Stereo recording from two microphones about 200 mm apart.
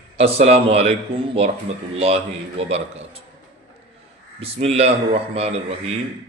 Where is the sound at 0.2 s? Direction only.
30° right (ahead or behind).